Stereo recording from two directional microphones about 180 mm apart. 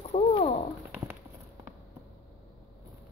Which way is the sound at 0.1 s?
35° left (ahead or behind).